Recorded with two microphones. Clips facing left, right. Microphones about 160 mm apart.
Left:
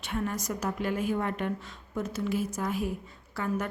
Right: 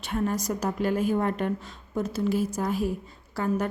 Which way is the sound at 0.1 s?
35° right (ahead or behind).